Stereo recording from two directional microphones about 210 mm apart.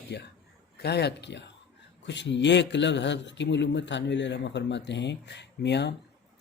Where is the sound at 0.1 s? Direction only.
55° left (ahead or behind).